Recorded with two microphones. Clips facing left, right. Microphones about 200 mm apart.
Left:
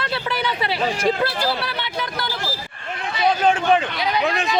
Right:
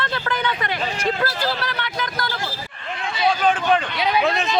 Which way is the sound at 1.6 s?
30° left (ahead or behind).